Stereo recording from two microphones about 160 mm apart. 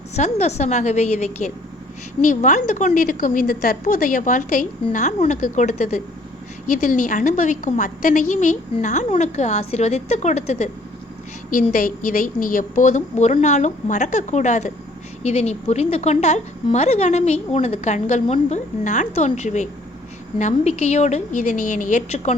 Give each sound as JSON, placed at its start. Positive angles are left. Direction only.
{"t": 0.2, "sound": "a woman's voice", "side_deg": 45}
{"t": 11.5, "sound": "a woman's voice", "side_deg": 60}